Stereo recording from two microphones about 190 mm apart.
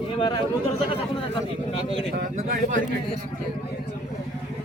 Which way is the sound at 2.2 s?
45° right (ahead or behind).